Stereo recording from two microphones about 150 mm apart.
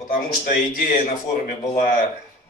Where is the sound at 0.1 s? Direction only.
70° left (ahead or behind).